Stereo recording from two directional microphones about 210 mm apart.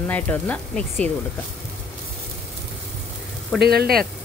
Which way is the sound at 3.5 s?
50° right (ahead or behind).